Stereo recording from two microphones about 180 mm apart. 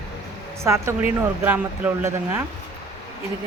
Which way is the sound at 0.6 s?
15° right (ahead or behind).